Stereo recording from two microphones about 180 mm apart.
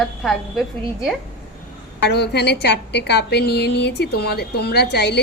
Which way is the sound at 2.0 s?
65° left (ahead or behind).